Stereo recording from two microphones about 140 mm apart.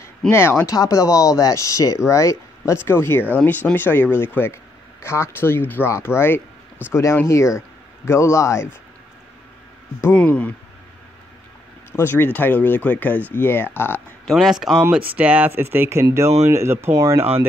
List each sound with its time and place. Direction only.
0.3 s speech: 15° left (ahead or behind)
10.0 s speech: 10° left (ahead or behind)
12.0 s speech: 15° left (ahead or behind)
14.2 s speech: centre (ahead or behind); by 17.3 s 20° right (ahead or behind)